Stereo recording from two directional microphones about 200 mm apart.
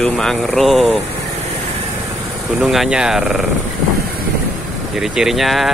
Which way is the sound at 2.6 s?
Centre (ahead or behind).